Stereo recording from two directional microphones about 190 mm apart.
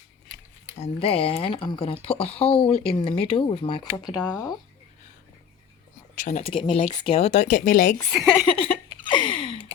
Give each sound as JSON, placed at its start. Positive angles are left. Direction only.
{"t": 0.8, "sound": "speech", "side_deg": 30}
{"t": 4.3, "sound": "speech", "side_deg": 20}
{"t": 6.1, "sound": "speech", "side_deg": 45}
{"t": 6.4, "sound": "speech", "side_deg": 25}
{"t": 8.1, "sound": "a woman's voice", "side_deg": 0}
{"t": 8.4, "sound": "speech", "side_deg": 30}
{"t": 9.0, "sound": "a sound", "side_deg": 25}